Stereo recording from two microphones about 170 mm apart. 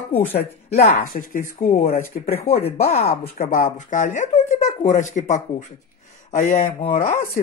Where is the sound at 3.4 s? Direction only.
50° left (ahead or behind).